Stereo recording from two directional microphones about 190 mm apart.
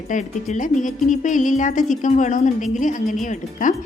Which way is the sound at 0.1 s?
40° left (ahead or behind).